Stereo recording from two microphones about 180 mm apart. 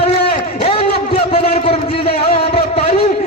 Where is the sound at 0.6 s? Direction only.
35° left (ahead or behind).